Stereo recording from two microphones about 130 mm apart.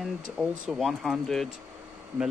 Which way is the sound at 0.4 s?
Centre (ahead or behind).